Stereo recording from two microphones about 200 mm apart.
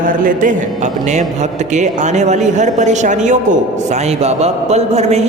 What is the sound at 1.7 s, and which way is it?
Mantra, 35° right (ahead or behind).